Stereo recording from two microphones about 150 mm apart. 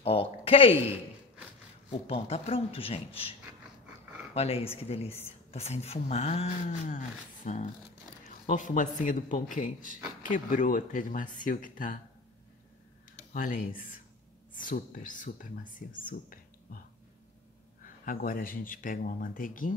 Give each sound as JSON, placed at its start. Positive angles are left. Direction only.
{"t": 0.0, "sound": "speech", "side_deg": 40}
{"t": 1.9, "sound": "speech", "side_deg": 40}
{"t": 4.4, "sound": "speech", "side_deg": 40}
{"t": 13.3, "sound": "speech", "side_deg": 65}
{"t": 16.1, "sound": "a sound", "side_deg": 70}
{"t": 17.8, "sound": "speech", "side_deg": 65}